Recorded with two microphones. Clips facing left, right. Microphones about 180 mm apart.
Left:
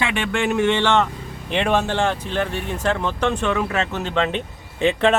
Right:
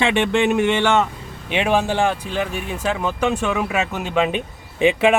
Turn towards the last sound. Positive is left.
turn(degrees=-15)  # may be behind; listen again after turning